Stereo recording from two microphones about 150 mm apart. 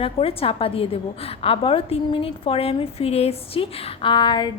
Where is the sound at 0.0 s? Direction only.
40° left (ahead or behind).